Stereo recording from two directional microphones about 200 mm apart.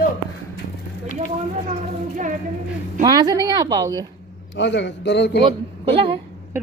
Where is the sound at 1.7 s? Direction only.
40° right (ahead or behind).